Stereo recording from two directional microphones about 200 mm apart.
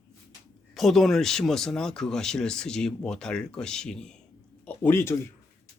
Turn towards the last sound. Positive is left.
turn(degrees=10)  # may be behind; listen again after turning